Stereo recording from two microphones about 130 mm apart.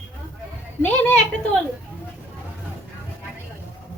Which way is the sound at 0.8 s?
10° left (ahead or behind).